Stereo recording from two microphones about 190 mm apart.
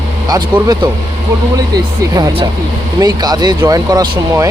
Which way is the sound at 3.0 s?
20° right (ahead or behind).